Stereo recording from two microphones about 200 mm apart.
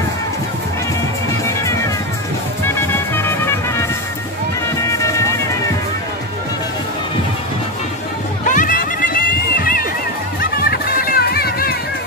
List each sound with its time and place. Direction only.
2.6 s music: 10° left (ahead or behind)
8.5 s music: 40° left (ahead or behind)